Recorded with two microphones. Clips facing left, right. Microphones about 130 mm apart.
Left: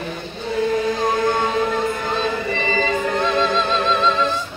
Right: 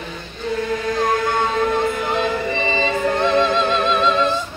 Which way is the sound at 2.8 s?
20° right (ahead or behind).